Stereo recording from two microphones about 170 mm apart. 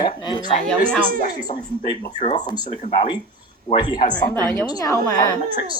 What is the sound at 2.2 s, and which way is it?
Speech, 30° left (ahead or behind).